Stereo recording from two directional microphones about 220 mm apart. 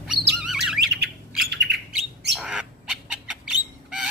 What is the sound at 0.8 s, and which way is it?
Bird, 50° right (ahead or behind).